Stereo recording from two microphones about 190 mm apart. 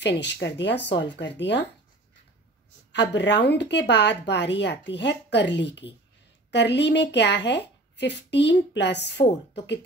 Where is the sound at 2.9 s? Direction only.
65° left (ahead or behind).